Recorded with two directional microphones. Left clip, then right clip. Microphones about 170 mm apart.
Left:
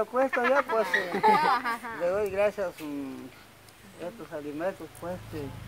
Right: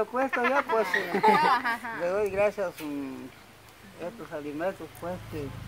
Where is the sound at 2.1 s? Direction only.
Centre (ahead or behind).